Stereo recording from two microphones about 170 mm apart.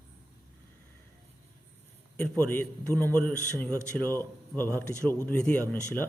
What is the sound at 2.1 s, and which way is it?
A man's voice, 10° left (ahead or behind).